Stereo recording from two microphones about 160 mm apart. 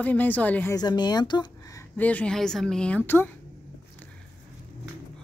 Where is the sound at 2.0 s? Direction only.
10° left (ahead or behind).